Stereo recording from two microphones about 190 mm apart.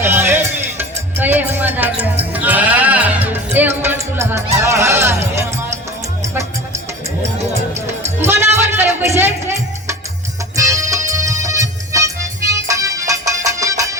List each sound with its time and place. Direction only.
0.0 s music: 10° right (ahead or behind)
8.2 s music: 10° right (ahead or behind)